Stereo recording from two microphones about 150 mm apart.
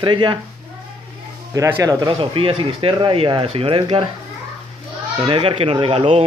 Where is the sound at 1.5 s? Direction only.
20° right (ahead or behind).